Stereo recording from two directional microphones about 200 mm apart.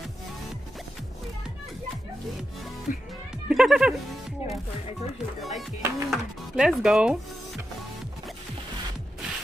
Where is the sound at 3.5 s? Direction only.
5° right (ahead or behind).